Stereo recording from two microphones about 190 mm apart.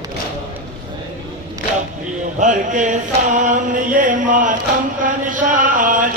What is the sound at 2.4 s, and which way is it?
Chant, 40° right (ahead or behind).